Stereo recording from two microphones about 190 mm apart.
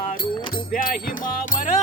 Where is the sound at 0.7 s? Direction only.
45° left (ahead or behind).